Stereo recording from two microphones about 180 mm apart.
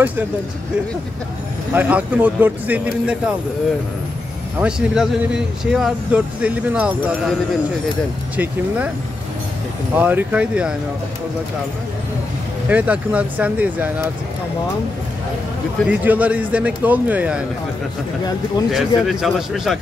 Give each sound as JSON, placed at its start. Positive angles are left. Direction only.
{"t": 1.7, "sound": "speech", "side_deg": -10}
{"t": 4.6, "sound": "speech", "side_deg": -5}
{"t": 8.4, "sound": "speech", "side_deg": -10}
{"t": 9.9, "sound": "speech", "side_deg": -10}
{"t": 12.6, "sound": "speech", "side_deg": -10}
{"t": 15.9, "sound": "speech", "side_deg": -10}
{"t": 18.7, "sound": "speech", "side_deg": 0}